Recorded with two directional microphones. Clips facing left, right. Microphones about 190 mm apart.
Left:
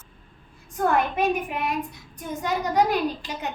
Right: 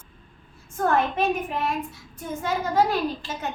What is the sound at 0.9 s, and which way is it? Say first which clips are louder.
A child's voice: even; 15° left (ahead or behind).